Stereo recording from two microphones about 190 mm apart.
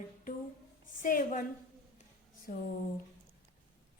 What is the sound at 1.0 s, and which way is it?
Speech, 45° left (ahead or behind).